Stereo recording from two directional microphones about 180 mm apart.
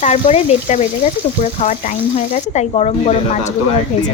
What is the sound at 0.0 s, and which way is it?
A woman's voice, 35° left (ahead or behind).